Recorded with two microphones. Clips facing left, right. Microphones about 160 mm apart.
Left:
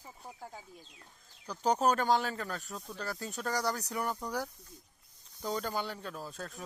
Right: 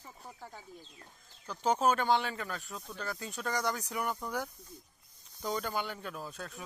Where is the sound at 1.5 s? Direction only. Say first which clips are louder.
Even; 40° left (ahead or behind).